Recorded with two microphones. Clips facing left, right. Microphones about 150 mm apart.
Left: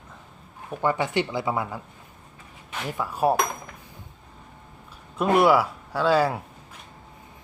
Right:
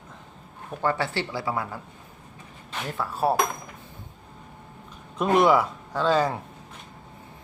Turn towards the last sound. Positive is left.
turn(degrees=10)  # may be behind; listen again after turning